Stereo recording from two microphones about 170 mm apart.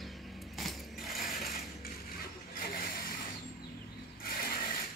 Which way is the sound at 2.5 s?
60° left (ahead or behind).